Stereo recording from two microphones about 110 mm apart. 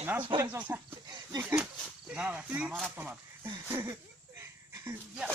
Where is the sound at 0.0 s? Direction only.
15° right (ahead or behind).